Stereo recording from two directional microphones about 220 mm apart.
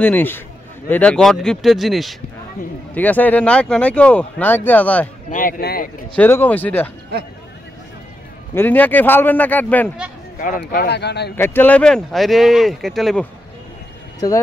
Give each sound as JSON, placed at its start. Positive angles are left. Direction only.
{"t": 0.0, "sound": "speech", "side_deg": 10}
{"t": 5.3, "sound": "speech", "side_deg": 40}
{"t": 6.1, "sound": "speech", "side_deg": 10}
{"t": 8.5, "sound": "speech", "side_deg": 10}
{"t": 10.4, "sound": "speech", "side_deg": 40}
{"t": 11.3, "sound": "speech", "side_deg": 10}